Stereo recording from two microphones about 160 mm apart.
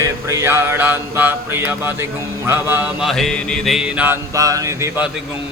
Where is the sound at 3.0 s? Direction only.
Centre (ahead or behind).